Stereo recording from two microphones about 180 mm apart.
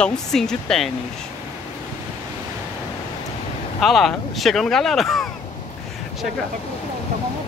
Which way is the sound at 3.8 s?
Centre (ahead or behind).